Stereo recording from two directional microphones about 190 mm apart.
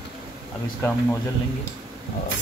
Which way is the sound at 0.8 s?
15° left (ahead or behind).